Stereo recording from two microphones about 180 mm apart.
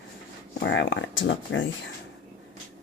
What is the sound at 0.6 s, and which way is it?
Speech, 75° left (ahead or behind).